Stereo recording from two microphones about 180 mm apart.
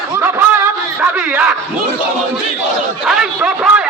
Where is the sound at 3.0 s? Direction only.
5° right (ahead or behind).